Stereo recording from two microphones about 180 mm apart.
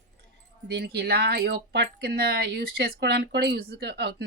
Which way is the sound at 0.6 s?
65° right (ahead or behind).